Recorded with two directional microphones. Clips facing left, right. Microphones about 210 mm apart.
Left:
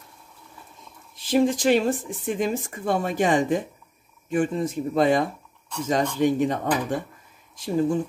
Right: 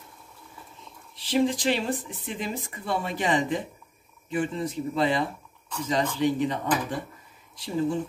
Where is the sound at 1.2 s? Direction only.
45° left (ahead or behind).